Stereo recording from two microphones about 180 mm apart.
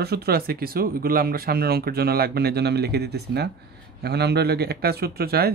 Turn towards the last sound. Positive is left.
turn(degrees=-60)  # may be behind; listen again after turning